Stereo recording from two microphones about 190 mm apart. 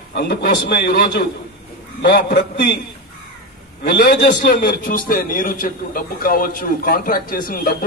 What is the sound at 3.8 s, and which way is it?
A man's voice, 55° left (ahead or behind).